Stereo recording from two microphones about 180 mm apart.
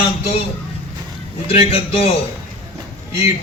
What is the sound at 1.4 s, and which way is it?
Speech, 35° left (ahead or behind).